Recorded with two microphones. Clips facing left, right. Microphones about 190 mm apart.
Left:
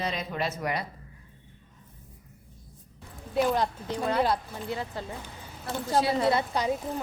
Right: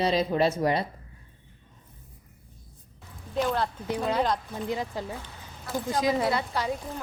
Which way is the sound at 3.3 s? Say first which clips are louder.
Left 2 dB; 10° left (ahead or behind).